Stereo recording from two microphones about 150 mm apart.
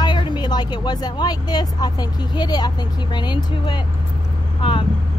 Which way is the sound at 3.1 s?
30° left (ahead or behind).